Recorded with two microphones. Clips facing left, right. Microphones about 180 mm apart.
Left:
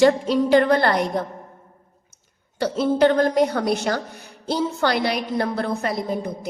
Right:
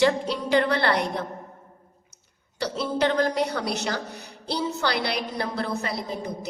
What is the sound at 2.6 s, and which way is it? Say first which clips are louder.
A woman's voice: left 7 dB; 50° left (ahead or behind).